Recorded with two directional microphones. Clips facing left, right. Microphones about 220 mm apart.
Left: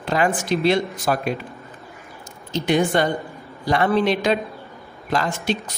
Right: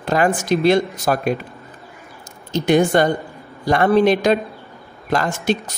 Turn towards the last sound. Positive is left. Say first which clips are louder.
# right 4 dB
turn(degrees=-45)  # may be behind; listen again after turning